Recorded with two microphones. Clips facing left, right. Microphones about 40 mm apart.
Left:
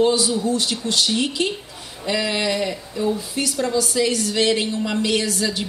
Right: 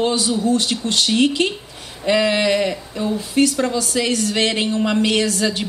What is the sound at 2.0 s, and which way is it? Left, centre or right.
A woman's voice, right.